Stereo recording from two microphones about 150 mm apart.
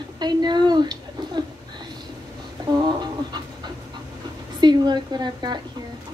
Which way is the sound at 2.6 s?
30° right (ahead or behind).